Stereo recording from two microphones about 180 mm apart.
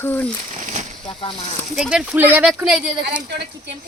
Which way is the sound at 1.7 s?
Centre (ahead or behind).